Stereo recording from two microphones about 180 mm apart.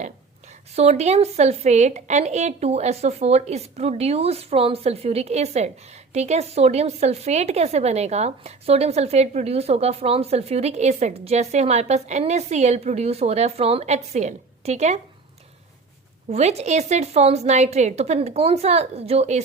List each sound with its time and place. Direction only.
0.8 s a woman's voice: 35° right (ahead or behind)
16.3 s a woman's voice: 35° right (ahead or behind)